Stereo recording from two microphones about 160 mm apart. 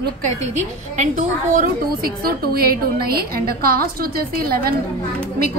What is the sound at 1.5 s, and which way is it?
A woman's voice, 60° right (ahead or behind).